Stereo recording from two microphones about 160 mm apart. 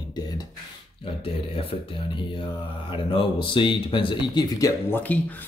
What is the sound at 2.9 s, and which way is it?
Speech, 30° left (ahead or behind).